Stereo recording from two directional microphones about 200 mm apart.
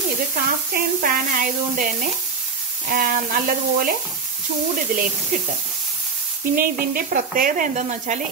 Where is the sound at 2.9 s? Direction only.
45° right (ahead or behind).